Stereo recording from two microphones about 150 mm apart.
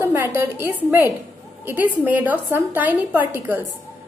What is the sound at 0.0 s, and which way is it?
Speech, 15° right (ahead or behind).